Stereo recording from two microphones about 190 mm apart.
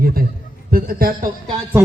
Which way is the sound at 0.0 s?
50° right (ahead or behind).